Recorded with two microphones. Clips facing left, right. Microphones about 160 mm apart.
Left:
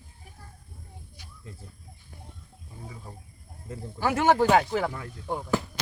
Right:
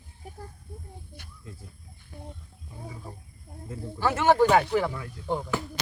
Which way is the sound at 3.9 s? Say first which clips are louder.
Right 1 dB; 15° left (ahead or behind).